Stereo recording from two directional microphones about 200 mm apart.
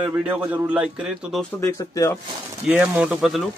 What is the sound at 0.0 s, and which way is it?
Speech, 10° right (ahead or behind).